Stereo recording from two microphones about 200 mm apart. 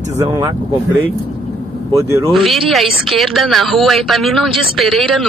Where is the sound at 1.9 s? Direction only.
15° right (ahead or behind).